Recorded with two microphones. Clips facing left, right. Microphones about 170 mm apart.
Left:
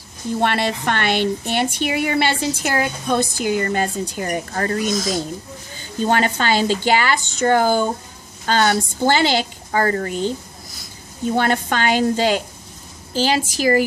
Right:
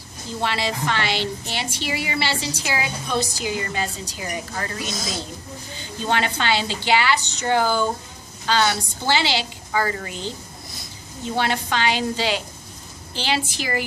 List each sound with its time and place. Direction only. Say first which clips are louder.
0.4 s a woman's voice: left 4 dB; 55° left (ahead or behind)
11.3 s a woman's voice: left 3 dB; 50° left (ahead or behind)